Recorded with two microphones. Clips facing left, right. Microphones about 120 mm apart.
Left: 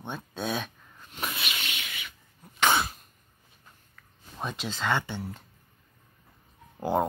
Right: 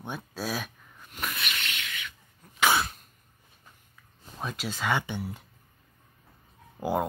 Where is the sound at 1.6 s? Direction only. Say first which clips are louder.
Right 1 dB; 15° left (ahead or behind).